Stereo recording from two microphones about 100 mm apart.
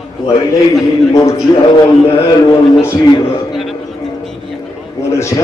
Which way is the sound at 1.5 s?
35° left (ahead or behind).